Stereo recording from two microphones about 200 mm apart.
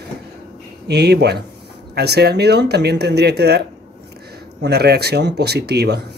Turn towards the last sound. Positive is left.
turn(degrees=-55)  # may be behind; listen again after turning